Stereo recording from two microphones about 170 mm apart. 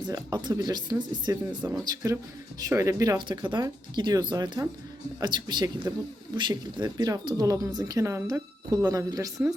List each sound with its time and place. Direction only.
0.0 s speech: 25° right (ahead or behind)
1.5 s speech: 5° right (ahead or behind)
1.8 s speech: 25° right (ahead or behind)